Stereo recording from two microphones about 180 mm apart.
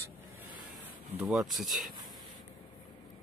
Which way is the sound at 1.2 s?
Centre (ahead or behind).